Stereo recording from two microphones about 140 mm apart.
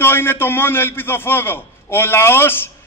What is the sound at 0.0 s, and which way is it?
A man's voice, 15° left (ahead or behind).